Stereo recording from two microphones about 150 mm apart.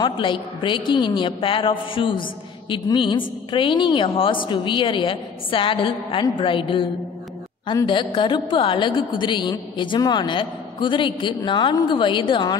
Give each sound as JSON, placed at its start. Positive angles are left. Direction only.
{"t": 0.0, "sound": "a woman's voice", "side_deg": 35}